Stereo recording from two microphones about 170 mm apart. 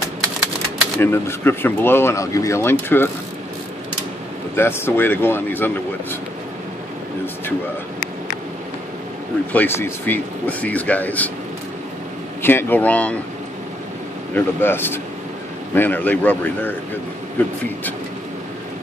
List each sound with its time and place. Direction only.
0.9 s speech: 15° left (ahead or behind)
4.6 s speech: 15° left (ahead or behind)
9.5 s speech: 10° left (ahead or behind)
12.4 s speech: 10° left (ahead or behind)
14.3 s speech: 15° left (ahead or behind)